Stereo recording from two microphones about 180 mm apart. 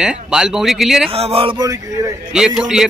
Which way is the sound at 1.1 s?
35° right (ahead or behind).